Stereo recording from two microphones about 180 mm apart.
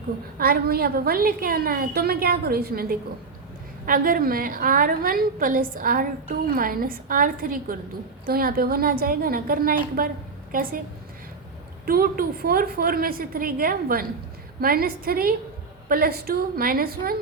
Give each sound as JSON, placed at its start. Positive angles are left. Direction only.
{"t": 0.3, "sound": "a woman's voice", "side_deg": -55}
{"t": 11.9, "sound": "a woman's voice", "side_deg": -55}